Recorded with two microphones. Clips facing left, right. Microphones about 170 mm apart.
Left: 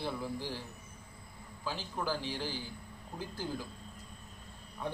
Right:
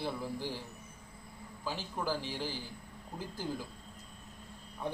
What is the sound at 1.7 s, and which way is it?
Speech, 5° right (ahead or behind).